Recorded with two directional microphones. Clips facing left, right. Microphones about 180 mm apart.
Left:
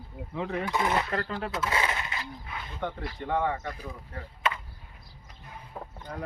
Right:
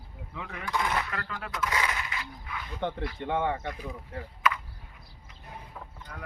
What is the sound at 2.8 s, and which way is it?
Speech, 25° right (ahead or behind).